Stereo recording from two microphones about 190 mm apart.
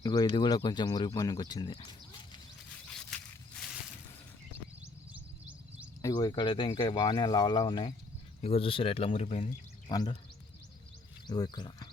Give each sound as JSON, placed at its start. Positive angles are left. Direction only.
{"t": 0.0, "sound": "speech", "side_deg": 20}
{"t": 2.8, "sound": "a sound", "side_deg": 5}
{"t": 6.0, "sound": "speech", "side_deg": 20}
{"t": 9.9, "sound": "speech", "side_deg": 20}
{"t": 11.3, "sound": "speech", "side_deg": 20}